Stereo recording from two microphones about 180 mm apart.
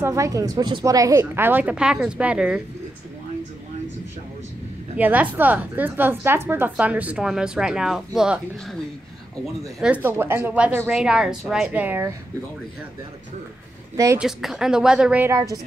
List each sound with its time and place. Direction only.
0.0 s a woman's voice: 15° right (ahead or behind)
4.9 s a woman's voice: 10° right (ahead or behind)
10.0 s a woman's voice: 15° right (ahead or behind)
13.9 s a woman's voice: 15° right (ahead or behind)
14.2 s a woman's voice: centre (ahead or behind)